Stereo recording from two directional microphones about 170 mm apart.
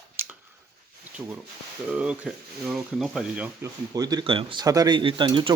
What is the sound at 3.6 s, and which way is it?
Speech, 20° right (ahead or behind).